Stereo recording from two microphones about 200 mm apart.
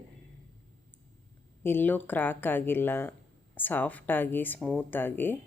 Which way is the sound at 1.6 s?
10° left (ahead or behind).